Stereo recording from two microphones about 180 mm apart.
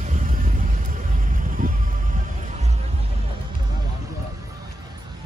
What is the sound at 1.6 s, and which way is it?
Music, 50° right (ahead or behind).